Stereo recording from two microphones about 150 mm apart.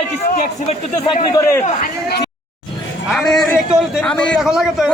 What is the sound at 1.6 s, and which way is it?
Speech, 65° left (ahead or behind).